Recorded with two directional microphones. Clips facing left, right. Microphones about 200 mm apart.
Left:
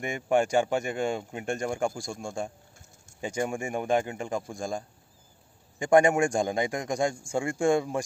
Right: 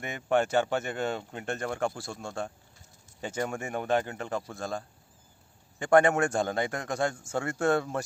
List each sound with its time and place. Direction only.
0.0 s a man's voice: 10° left (ahead or behind)
1.9 s a man's voice: 5° right (ahead or behind)
2.1 s a man's voice: 10° left (ahead or behind)